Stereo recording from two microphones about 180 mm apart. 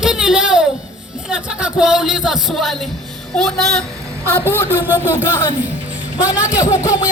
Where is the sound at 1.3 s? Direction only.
5° right (ahead or behind); by 4.5 s 10° left (ahead or behind).